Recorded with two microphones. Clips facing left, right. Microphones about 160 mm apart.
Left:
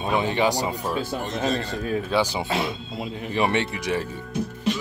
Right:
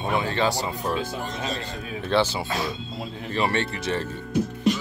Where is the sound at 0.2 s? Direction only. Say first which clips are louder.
Left 2 dB; 15° left (ahead or behind).